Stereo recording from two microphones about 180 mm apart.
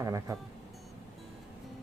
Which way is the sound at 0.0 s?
20° right (ahead or behind).